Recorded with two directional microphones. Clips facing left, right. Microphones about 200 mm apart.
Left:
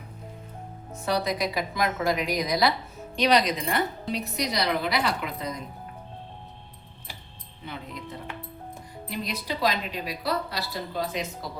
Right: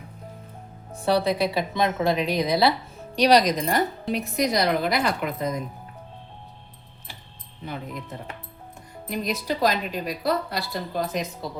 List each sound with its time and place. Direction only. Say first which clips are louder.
0.9 s a woman's voice: right 5 dB; 30° right (ahead or behind)
3.2 s a woman's voice: right 4 dB; 40° right (ahead or behind)
9.0 s a woman's voice: right 5 dB; 45° right (ahead or behind)